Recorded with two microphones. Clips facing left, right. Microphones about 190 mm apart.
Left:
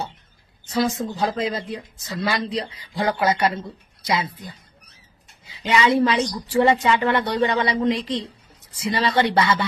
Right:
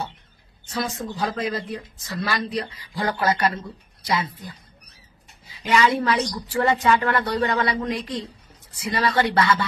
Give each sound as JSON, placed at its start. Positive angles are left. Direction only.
{"t": 0.7, "sound": "a woman's voice", "side_deg": 25}
{"t": 5.6, "sound": "a woman's voice", "side_deg": 25}